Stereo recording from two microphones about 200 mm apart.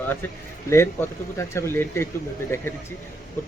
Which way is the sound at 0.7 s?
15° left (ahead or behind).